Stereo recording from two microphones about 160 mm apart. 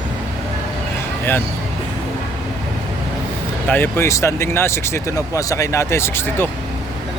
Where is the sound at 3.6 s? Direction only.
10° left (ahead or behind).